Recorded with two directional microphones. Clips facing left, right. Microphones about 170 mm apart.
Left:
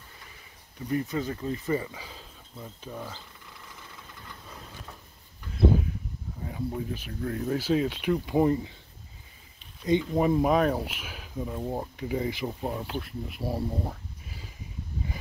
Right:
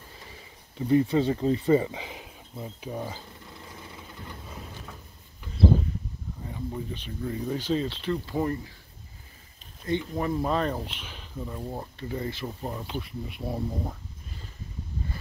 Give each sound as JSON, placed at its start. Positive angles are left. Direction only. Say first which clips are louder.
{"t": 0.7, "sound": "speech", "louder": "right 7 dB", "side_deg": -25}
{"t": 4.5, "sound": "a sound", "louder": "right 3 dB", "side_deg": -10}
{"t": 6.4, "sound": "speech", "louder": "left 2 dB", "side_deg": 5}
{"t": 9.8, "sound": "speech", "louder": "left 5 dB", "side_deg": 15}